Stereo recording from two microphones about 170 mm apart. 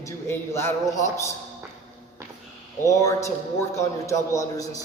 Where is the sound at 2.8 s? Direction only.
20° left (ahead or behind).